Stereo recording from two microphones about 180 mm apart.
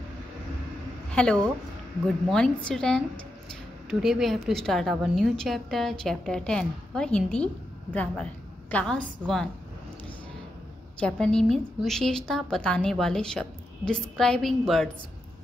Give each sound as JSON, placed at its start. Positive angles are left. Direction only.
{"t": 1.1, "sound": "a woman's voice", "side_deg": 5}
{"t": 11.0, "sound": "a woman's voice", "side_deg": 5}